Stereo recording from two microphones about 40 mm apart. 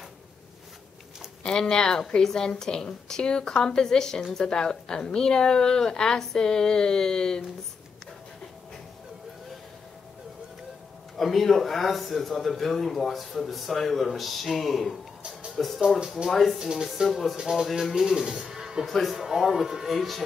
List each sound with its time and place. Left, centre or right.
1.4 s a woman's voice: centre
11.1 s speech: centre
16.5 s speech: centre
18.9 s speech: centre
19.1 s speech: centre
19.9 s speech: centre